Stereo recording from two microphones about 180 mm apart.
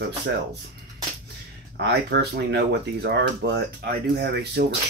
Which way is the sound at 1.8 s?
65° right (ahead or behind).